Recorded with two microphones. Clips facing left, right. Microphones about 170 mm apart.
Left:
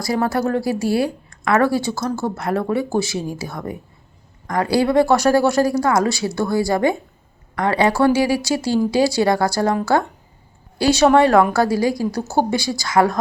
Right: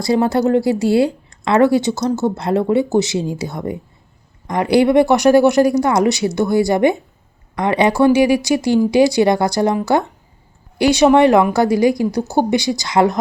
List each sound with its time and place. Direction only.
0.0 s speech: 25° right (ahead or behind)
10.8 s speech: 15° right (ahead or behind)